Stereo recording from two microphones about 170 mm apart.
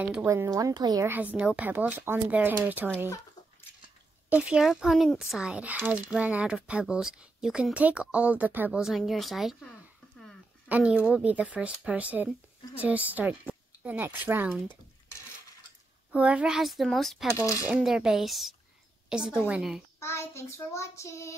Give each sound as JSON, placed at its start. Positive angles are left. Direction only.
{"t": 0.0, "sound": "speech", "side_deg": -10}
{"t": 1.0, "sound": "speech", "side_deg": -10}
{"t": 4.3, "sound": "speech", "side_deg": -10}
{"t": 10.7, "sound": "speech", "side_deg": -10}
{"t": 16.1, "sound": "speech", "side_deg": -10}
{"t": 20.0, "sound": "child singing", "side_deg": 15}